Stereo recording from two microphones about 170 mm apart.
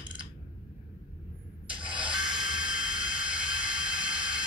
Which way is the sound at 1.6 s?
30° right (ahead or behind).